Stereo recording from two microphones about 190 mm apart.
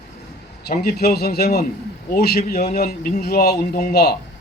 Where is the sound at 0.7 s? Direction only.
55° left (ahead or behind).